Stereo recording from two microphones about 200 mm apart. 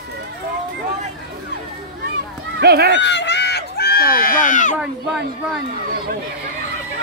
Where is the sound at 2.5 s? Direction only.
55° right (ahead or behind).